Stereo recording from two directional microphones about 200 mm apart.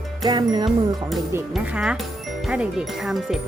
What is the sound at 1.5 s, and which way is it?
Speech, centre (ahead or behind).